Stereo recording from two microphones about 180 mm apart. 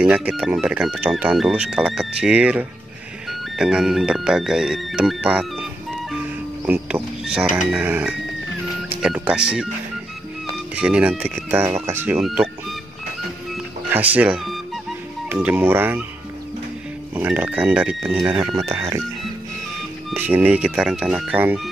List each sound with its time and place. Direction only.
0.0 s speech: 5° right (ahead or behind)
10.7 s speech: 5° right (ahead or behind)
12.3 s speech: centre (ahead or behind)
13.9 s speech: 10° right (ahead or behind)
17.1 s speech: 10° right (ahead or behind)
18.3 s speech: 25° right (ahead or behind)
20.2 s speech: 10° right (ahead or behind)